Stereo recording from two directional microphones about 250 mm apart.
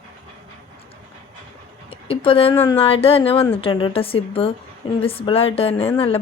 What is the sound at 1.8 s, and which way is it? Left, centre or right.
A woman's voice, left.